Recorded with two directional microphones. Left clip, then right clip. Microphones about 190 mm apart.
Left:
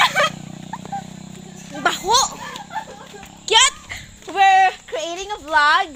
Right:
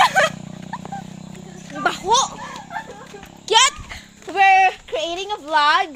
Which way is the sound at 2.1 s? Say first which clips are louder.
Even; 5° left (ahead or behind).